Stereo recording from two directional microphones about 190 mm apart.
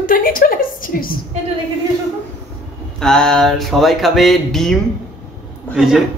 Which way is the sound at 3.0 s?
5° left (ahead or behind).